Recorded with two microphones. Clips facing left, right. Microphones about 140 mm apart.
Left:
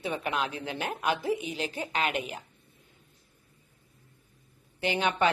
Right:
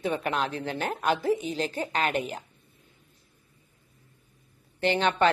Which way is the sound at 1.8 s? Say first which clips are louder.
Right 2 dB; 40° right (ahead or behind).